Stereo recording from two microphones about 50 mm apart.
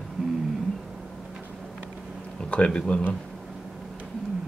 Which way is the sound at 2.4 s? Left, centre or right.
Left.